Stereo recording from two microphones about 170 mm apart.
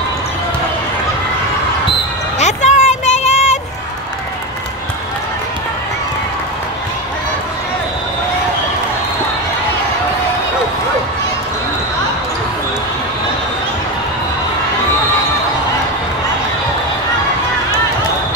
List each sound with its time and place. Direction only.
2.3 s vehicle: 45° left (ahead or behind)